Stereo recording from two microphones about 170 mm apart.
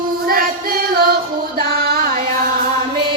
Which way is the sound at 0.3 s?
60° right (ahead or behind).